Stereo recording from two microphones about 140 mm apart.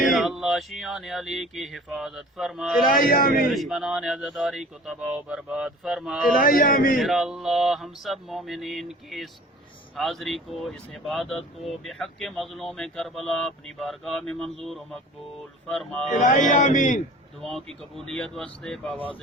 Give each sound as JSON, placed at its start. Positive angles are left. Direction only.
{"t": 0.0, "sound": "speech", "side_deg": 0}
{"t": 2.9, "sound": "a man's voice", "side_deg": 85}
{"t": 3.4, "sound": "speech", "side_deg": 0}
{"t": 6.4, "sound": "a man's voice", "side_deg": 90}
{"t": 7.0, "sound": "speech", "side_deg": 0}
{"t": 15.7, "sound": "speech", "side_deg": 5}
{"t": 16.2, "sound": "speech", "side_deg": 65}
{"t": 17.9, "sound": "speech", "side_deg": 5}